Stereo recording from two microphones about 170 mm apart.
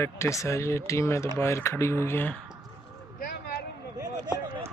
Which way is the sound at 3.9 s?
20° right (ahead or behind).